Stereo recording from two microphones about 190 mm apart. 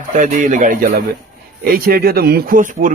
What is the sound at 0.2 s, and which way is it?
A man's voice, 40° right (ahead or behind).